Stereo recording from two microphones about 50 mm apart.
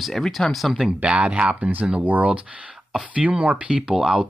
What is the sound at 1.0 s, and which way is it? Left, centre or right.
Speech, right.